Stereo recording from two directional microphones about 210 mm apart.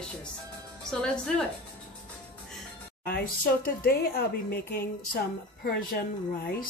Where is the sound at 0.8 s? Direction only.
5° left (ahead or behind).